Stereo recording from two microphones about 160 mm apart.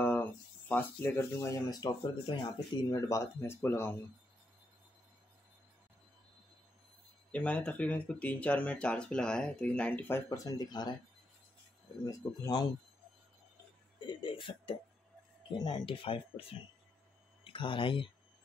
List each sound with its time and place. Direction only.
0.0 s speech: 10° left (ahead or behind)
7.2 s speech: 10° left (ahead or behind); by 11.0 s 25° left (ahead or behind)
12.0 s speech: 25° left (ahead or behind)
14.0 s a sound: 30° left (ahead or behind)
15.5 s speech: 25° left (ahead or behind)